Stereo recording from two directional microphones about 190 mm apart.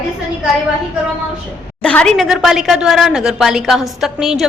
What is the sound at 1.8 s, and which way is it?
A woman's voice, 5° left (ahead or behind).